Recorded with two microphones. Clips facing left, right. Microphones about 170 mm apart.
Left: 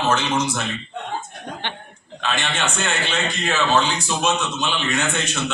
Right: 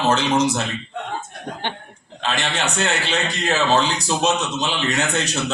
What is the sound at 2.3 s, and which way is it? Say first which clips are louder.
A man's voice: right 1 dB; 35° right (ahead or behind).